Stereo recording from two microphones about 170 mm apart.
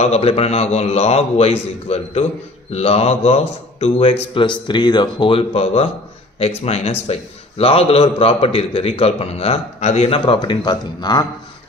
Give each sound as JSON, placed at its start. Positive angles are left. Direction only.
{"t": 0.0, "sound": "speech", "side_deg": 35}